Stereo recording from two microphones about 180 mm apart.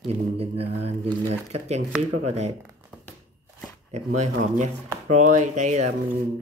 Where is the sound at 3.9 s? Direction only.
40° right (ahead or behind).